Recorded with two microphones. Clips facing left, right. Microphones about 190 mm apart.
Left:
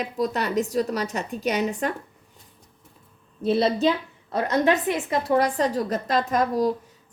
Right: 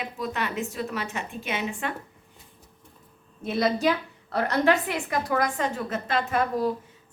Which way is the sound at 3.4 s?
30° left (ahead or behind).